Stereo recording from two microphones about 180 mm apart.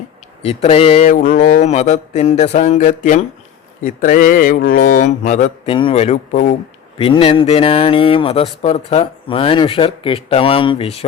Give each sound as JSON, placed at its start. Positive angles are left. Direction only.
{"t": 0.4, "sound": "speech", "side_deg": 35}
{"t": 1.0, "sound": "speech", "side_deg": 50}
{"t": 5.7, "sound": "speech", "side_deg": 30}